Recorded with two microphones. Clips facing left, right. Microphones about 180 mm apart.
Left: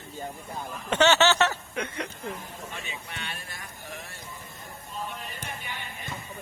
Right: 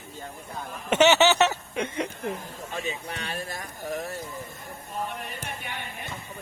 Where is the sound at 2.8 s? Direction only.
40° right (ahead or behind).